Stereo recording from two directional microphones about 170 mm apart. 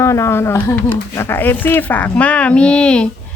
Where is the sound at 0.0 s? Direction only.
15° left (ahead or behind).